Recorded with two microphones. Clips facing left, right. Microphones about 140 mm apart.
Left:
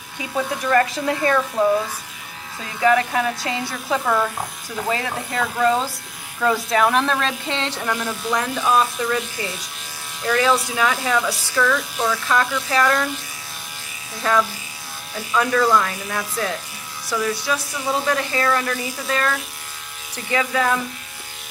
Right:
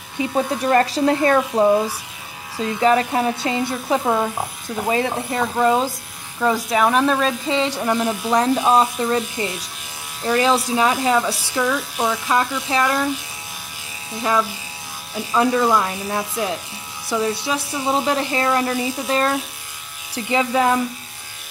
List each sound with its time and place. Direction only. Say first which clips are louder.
0.3 s speech: right 2 dB; 30° right (ahead or behind); by 7.8 s 5° right (ahead or behind)
7.8 s speech: right 5 dB; 20° right (ahead or behind)
8.3 s speech: right 4 dB; 30° right (ahead or behind)
14.1 s speech: even; 20° right (ahead or behind)